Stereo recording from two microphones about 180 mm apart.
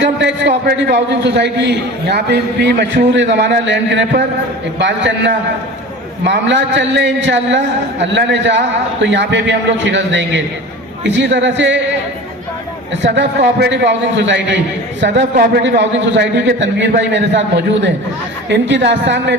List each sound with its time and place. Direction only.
0.0 s a man's voice: 80° right
13.0 s a man's voice: 75° right (ahead or behind)